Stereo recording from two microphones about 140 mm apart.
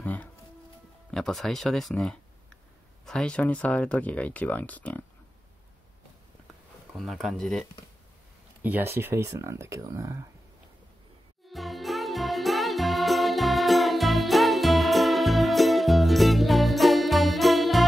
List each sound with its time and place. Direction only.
0.0 s music: 10° left (ahead or behind)
1.1 s speech: 5° left (ahead or behind)
6.9 s speech: centre (ahead or behind)
8.6 s speech: 15° right (ahead or behind)
11.4 s music: centre (ahead or behind)